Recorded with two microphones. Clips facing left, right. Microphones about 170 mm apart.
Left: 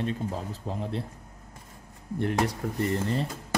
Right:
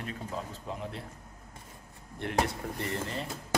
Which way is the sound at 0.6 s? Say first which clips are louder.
Left 7 dB; 35° left (ahead or behind).